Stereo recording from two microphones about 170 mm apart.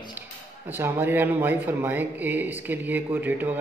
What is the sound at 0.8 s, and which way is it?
Speech, 15° right (ahead or behind).